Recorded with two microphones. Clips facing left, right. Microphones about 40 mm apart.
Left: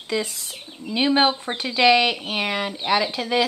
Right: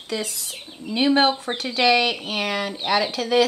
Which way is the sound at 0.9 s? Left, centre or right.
Centre.